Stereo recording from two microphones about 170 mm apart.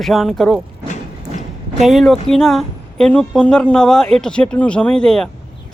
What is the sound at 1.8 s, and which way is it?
A woman's voice, centre (ahead or behind).